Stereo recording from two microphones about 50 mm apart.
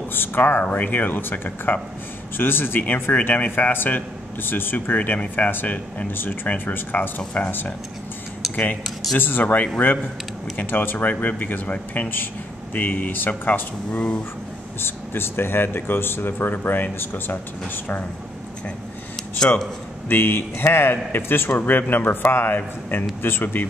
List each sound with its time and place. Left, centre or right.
0.1 s speech: left
2.8 s speech: left
5.5 s speech: left
9.1 s speech: left
10.7 s speech: left
14.8 s speech: left
20.1 s speech: left